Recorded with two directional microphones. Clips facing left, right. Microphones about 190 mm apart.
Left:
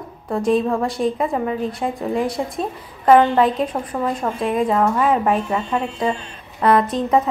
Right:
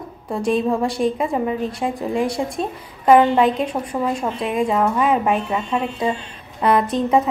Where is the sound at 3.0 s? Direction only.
15° right (ahead or behind).